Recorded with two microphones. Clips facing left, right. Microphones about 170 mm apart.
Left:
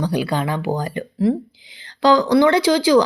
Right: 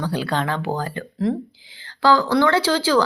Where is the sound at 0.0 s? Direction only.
15° left (ahead or behind).